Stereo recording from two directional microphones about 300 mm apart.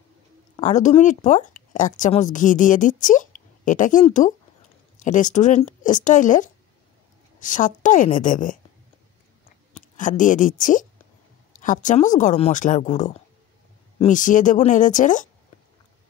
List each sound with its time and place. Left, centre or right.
0.6 s speech: left
9.8 s a woman's voice: left